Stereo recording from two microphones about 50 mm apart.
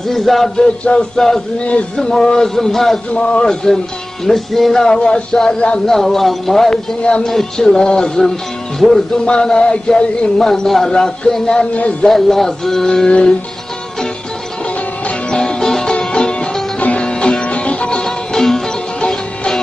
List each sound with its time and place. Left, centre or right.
0.0 s speech: centre
1.6 s speech: left
2.0 s speech: centre
3.1 s speech: centre
5.9 s speech: centre
9.1 s speech: centre
15.0 s music: centre